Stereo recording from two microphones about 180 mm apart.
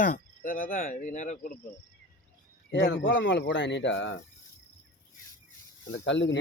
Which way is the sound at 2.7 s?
80° left.